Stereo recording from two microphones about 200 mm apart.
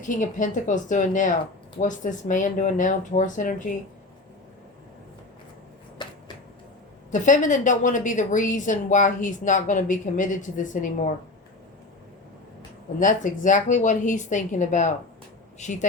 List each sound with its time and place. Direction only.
0.2 s a woman's voice: 40° left (ahead or behind)
6.0 s a sound: 20° left (ahead or behind)
7.1 s a woman's voice: 40° left (ahead or behind)
13.0 s a woman's voice: 40° left (ahead or behind)